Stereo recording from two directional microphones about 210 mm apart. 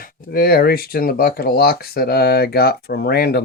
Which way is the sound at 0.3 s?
45° left (ahead or behind).